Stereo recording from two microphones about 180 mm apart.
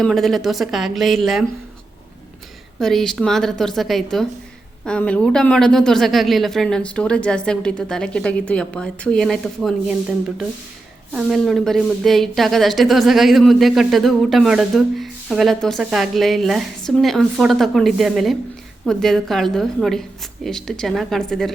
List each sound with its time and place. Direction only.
0.0 s speech: centre (ahead or behind)
2.7 s speech: centre (ahead or behind)
11.1 s speech: centre (ahead or behind)